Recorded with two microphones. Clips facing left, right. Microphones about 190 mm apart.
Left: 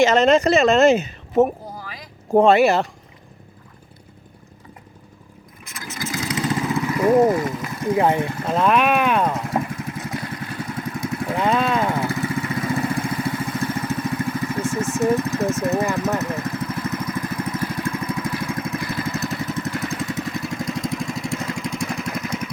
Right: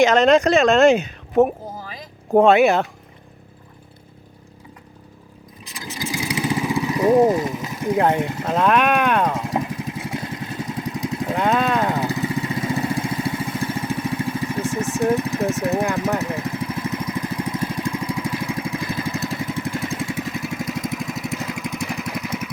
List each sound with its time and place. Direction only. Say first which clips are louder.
0.0 s a woman's voice: right 1 dB; centre (ahead or behind)
5.7 s vehicle: right 1 dB; 15° right (ahead or behind)
7.9 s a woman's voice: even; centre (ahead or behind)
8.2 s speech: right 1 dB; 15° right (ahead or behind)
8.4 s a woman's voice: even; 5° left (ahead or behind)
9.3 s vehicle: even; 15° right (ahead or behind)
11.3 s a woman's voice: even; centre (ahead or behind)
11.9 s vehicle: right 1 dB; 15° right (ahead or behind)